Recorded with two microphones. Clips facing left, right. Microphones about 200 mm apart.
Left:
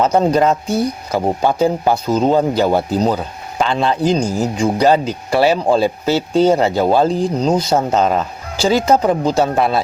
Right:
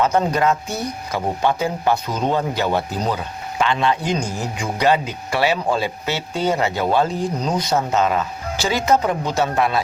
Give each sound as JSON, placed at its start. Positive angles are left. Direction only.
{"t": 0.0, "sound": "speech", "side_deg": 35}